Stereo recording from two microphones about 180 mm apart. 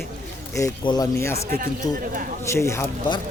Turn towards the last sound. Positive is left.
turn(degrees=15)  # may be behind; listen again after turning